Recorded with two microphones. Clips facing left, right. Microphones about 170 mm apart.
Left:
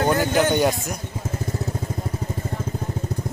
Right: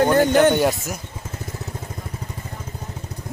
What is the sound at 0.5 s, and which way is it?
Speech, 5° right (ahead or behind).